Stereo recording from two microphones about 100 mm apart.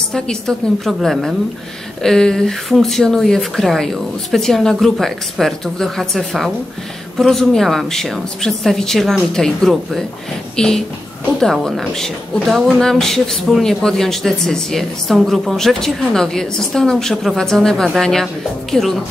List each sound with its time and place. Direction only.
0.1 s a woman's voice: 5° left (ahead or behind)